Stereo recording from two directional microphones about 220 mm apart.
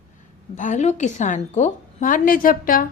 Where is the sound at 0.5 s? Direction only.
35° left (ahead or behind).